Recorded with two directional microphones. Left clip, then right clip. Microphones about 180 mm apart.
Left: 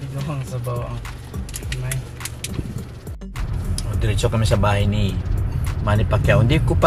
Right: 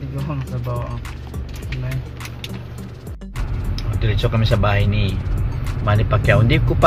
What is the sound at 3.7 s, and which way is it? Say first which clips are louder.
Speech: right 1 dB; 20° left (ahead or behind).